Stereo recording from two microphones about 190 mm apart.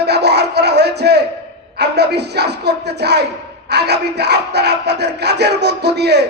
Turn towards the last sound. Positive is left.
turn(degrees=-60)  # may be behind; listen again after turning